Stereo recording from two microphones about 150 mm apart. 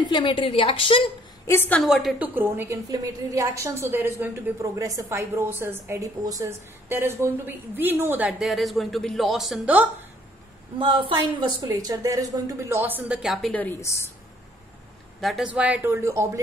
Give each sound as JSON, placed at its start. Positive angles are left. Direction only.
{"t": 0.0, "sound": "a woman's voice", "side_deg": 30}
{"t": 1.5, "sound": "a woman's voice", "side_deg": 15}
{"t": 1.8, "sound": "a woman's voice", "side_deg": 0}
{"t": 10.8, "sound": "a woman's voice", "side_deg": -35}
{"t": 13.2, "sound": "a woman's voice", "side_deg": 0}
{"t": 13.6, "sound": "a woman's voice", "side_deg": 15}
{"t": 15.1, "sound": "a woman's voice", "side_deg": 0}